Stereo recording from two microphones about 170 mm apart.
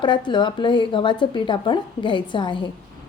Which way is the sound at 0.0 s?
25° left (ahead or behind).